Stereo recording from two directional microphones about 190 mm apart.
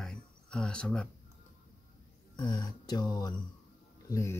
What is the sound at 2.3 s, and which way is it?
Speech, 25° left (ahead or behind).